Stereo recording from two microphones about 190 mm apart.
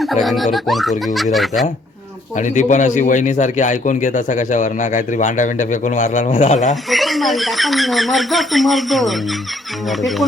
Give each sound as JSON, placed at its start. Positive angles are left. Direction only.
{"t": 0.0, "sound": "speech", "side_deg": 0}
{"t": 2.3, "sound": "a man's voice", "side_deg": 40}
{"t": 6.9, "sound": "speech", "side_deg": 0}